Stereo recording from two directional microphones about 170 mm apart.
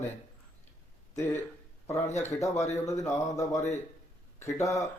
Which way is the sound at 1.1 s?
10° left (ahead or behind).